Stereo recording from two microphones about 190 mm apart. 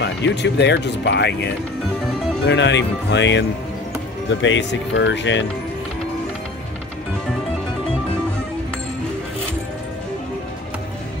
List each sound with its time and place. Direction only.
0.0 s speech: 65° left (ahead or behind)